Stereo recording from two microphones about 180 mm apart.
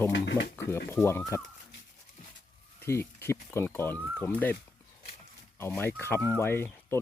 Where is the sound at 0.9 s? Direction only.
10° left (ahead or behind).